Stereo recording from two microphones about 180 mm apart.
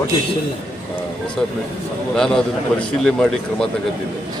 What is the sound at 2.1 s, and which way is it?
Speech, 5° left (ahead or behind).